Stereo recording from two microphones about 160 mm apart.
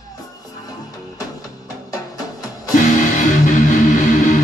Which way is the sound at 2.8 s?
55° left (ahead or behind).